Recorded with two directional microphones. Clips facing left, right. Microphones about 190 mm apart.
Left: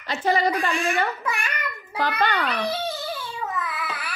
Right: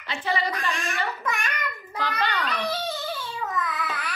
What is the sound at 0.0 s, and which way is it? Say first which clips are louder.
Speech: left 5 dB; 40° left (ahead or behind).